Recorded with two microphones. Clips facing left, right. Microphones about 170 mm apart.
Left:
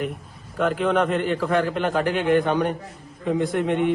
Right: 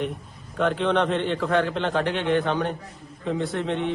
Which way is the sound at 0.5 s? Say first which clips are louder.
Left 1 dB; 5° left (ahead or behind).